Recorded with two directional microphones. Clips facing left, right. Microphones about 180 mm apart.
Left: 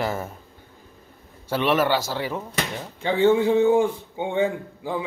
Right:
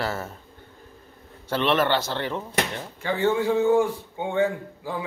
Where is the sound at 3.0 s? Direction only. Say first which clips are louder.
Left 5 dB; 20° left (ahead or behind).